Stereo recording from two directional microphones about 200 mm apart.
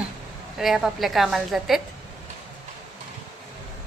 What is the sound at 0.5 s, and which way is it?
A woman's voice, centre (ahead or behind).